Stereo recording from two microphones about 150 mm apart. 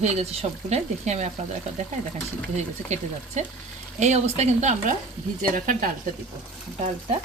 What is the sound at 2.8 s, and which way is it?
Speech, 50° right (ahead or behind).